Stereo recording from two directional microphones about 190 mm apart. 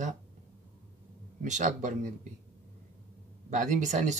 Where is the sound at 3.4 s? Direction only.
40° right (ahead or behind).